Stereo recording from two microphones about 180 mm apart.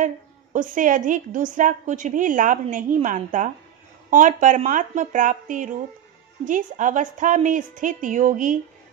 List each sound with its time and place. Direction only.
0.0 s a woman's voice: 45° right (ahead or behind)